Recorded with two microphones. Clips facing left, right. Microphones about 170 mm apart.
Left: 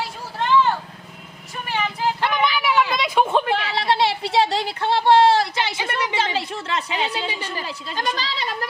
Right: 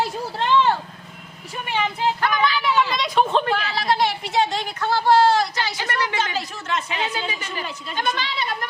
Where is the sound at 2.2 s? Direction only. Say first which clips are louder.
Left 1 dB; 20° left (ahead or behind).